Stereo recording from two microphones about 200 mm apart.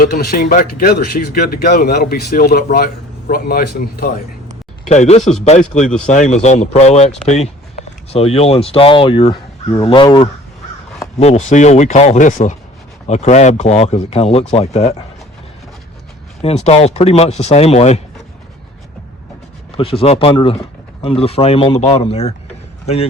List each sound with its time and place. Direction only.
0.0 s speech: 45° left (ahead or behind)
4.9 s speech: 35° left (ahead or behind)
11.2 s speech: 35° left (ahead or behind)
16.4 s speech: 30° left (ahead or behind)
19.7 s speech: 25° left (ahead or behind)